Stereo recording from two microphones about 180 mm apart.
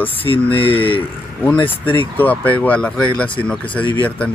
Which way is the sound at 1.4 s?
10° left (ahead or behind).